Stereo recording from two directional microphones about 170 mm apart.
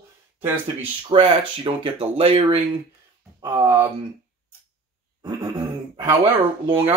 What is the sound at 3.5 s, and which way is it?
Speech, 15° right (ahead or behind).